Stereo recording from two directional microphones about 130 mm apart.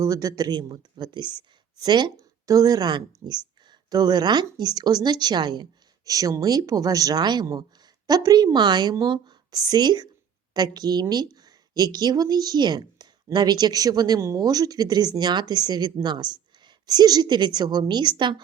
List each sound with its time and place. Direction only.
0.0 s speech: 25° right (ahead or behind)